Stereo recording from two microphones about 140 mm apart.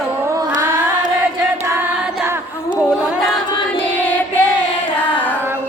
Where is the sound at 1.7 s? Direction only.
15° right (ahead or behind).